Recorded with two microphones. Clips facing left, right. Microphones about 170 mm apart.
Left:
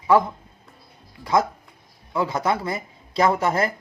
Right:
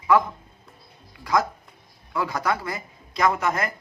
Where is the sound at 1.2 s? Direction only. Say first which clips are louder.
Left 2 dB; 25° left (ahead or behind).